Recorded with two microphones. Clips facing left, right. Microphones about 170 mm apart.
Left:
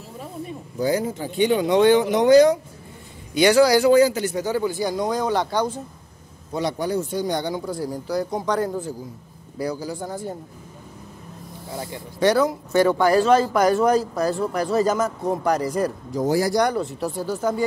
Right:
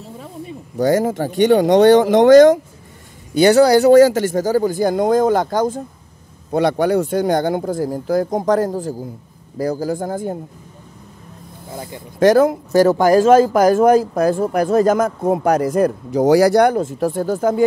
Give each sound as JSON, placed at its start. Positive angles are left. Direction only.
{"t": 1.0, "sound": "speech", "side_deg": -80}
{"t": 2.1, "sound": "speech", "side_deg": -90}
{"t": 3.3, "sound": "speech", "side_deg": -40}
{"t": 6.5, "sound": "speech", "side_deg": -65}
{"t": 12.2, "sound": "speech", "side_deg": -50}